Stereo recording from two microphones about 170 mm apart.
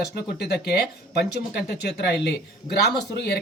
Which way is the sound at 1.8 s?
75° left (ahead or behind).